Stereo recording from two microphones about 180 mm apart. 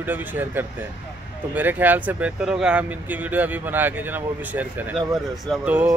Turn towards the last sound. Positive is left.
turn(degrees=-10)  # may be behind; listen again after turning